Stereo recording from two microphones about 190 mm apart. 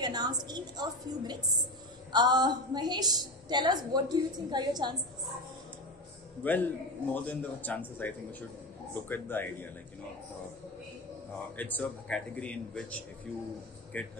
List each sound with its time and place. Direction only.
0.0 s a woman's voice: 20° right (ahead or behind)
6.4 s a man's voice: 10° left (ahead or behind)
11.5 s a man's voice: 10° left (ahead or behind)